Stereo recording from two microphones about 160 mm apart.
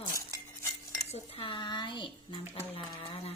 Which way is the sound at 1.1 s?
35° left (ahead or behind).